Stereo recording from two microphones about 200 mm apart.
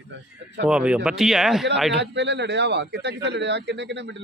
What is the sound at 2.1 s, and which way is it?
Speech, 60° right (ahead or behind).